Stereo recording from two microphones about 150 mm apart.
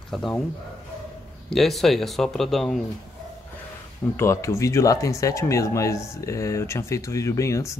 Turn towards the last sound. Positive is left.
turn(degrees=20)  # may be behind; listen again after turning